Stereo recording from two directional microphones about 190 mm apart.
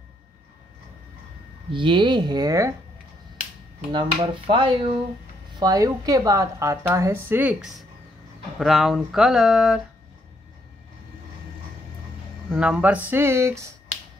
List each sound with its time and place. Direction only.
1.7 s speech: 25° right (ahead or behind)
3.9 s a woman's voice: 25° right (ahead or behind); by 9.8 s centre (ahead or behind)
12.4 s a woman's voice: 5° right (ahead or behind)